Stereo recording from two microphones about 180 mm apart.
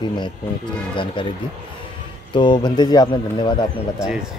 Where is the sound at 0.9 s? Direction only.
25° left (ahead or behind).